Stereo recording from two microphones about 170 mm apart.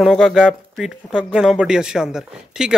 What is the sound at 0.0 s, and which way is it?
Speech, centre (ahead or behind).